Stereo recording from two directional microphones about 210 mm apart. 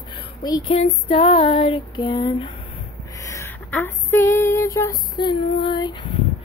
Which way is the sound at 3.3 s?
10° left (ahead or behind).